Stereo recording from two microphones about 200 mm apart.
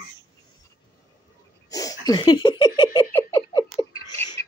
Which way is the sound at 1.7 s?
15° left (ahead or behind).